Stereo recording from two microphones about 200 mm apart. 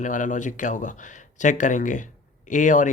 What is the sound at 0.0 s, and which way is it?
Speech, 40° left (ahead or behind).